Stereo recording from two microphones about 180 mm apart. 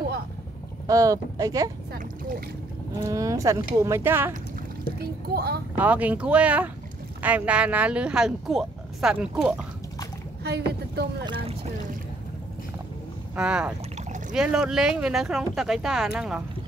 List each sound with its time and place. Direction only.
0.8 s speech: 20° right (ahead or behind)
3.1 s speech: 20° right (ahead or behind)
4.9 s speech: 60° right (ahead or behind)
5.8 s speech: 10° right (ahead or behind)
10.4 s speech: 65° right (ahead or behind)
11.2 s speech: 30° right (ahead or behind)
13.4 s speech: 5° right (ahead or behind)
13.9 s a sound: 40° right (ahead or behind)
14.3 s speech: 5° right (ahead or behind)